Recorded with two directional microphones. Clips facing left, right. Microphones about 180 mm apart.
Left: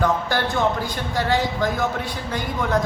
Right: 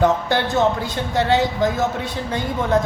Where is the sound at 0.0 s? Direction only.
20° right (ahead or behind).